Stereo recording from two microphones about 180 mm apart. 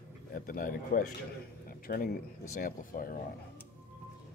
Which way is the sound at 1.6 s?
55° left (ahead or behind).